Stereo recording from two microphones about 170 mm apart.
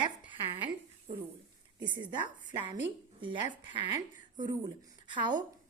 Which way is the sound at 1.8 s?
25° right (ahead or behind).